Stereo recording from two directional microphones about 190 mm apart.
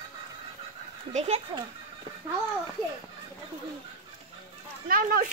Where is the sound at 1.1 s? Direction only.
35° right (ahead or behind).